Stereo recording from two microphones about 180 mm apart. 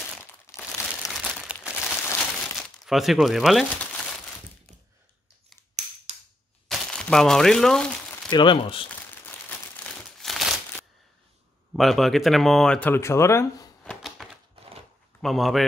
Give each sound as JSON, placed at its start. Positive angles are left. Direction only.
{"t": 0.5, "sound": "crumpling", "side_deg": 15}
{"t": 1.0, "sound": "crumpling", "side_deg": 0}
{"t": 6.7, "sound": "crumpling", "side_deg": 5}
{"t": 8.3, "sound": "speech", "side_deg": 25}
{"t": 9.8, "sound": "crumpling", "side_deg": 0}
{"t": 11.7, "sound": "speech", "side_deg": 0}
{"t": 14.0, "sound": "typewriter", "side_deg": 0}
{"t": 15.2, "sound": "speech", "side_deg": 0}